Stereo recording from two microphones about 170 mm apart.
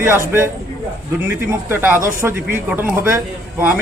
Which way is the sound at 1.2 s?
10° right (ahead or behind).